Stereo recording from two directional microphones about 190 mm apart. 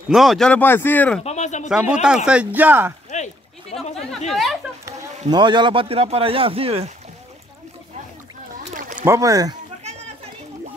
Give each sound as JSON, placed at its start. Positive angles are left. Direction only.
{"t": 0.1, "sound": "a man's voice", "side_deg": 0}
{"t": 1.2, "sound": "a sound", "side_deg": 35}
{"t": 1.7, "sound": "speech", "side_deg": -5}
{"t": 3.1, "sound": "a sound", "side_deg": 35}
{"t": 5.3, "sound": "speech", "side_deg": -25}
{"t": 8.6, "sound": "boat", "side_deg": -45}
{"t": 9.0, "sound": "speech", "side_deg": -15}